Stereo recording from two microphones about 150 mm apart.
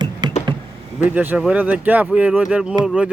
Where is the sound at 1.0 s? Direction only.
10° right (ahead or behind).